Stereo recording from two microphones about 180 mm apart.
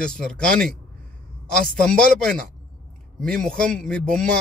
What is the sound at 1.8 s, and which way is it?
A man's voice, 5° left (ahead or behind).